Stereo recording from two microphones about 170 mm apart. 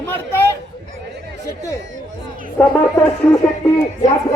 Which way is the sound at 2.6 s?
15° left (ahead or behind).